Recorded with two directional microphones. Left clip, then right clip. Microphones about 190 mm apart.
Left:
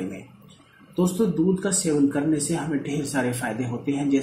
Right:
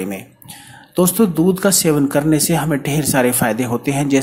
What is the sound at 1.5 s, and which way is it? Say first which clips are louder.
Speech: right 9 dB; 35° right (ahead or behind).